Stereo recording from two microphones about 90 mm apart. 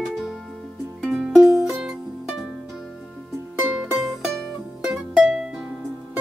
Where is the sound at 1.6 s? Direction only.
5° right (ahead or behind).